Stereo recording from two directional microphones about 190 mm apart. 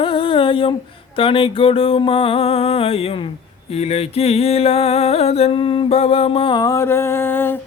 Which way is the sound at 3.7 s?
30° left (ahead or behind).